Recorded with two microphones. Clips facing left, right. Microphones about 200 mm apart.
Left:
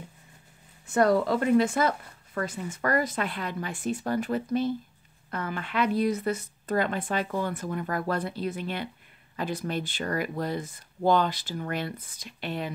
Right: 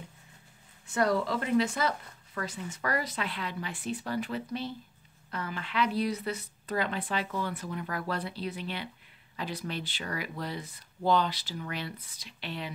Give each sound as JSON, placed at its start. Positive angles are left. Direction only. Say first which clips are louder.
{"t": 0.8, "sound": "speech", "louder": "left 5 dB", "side_deg": 50}